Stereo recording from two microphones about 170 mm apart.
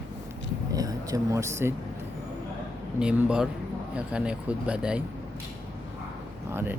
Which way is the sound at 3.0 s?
5° right (ahead or behind).